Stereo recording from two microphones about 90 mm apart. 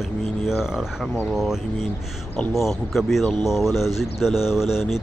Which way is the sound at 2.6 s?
Centre (ahead or behind).